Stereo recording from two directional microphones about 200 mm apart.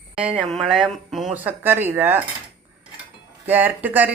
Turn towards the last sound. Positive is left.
turn(degrees=-10)  # may be behind; listen again after turning